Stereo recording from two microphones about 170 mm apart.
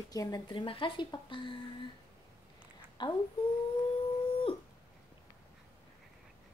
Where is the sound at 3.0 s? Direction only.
25° left (ahead or behind).